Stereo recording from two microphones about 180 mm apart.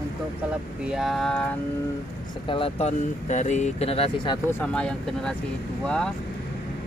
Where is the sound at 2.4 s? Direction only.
30° left (ahead or behind).